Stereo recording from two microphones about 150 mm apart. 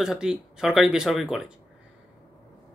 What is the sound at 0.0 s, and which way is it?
Speech, 5° right (ahead or behind).